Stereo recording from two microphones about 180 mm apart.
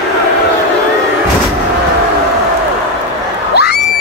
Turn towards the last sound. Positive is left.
turn(degrees=65)  # may be behind; listen again after turning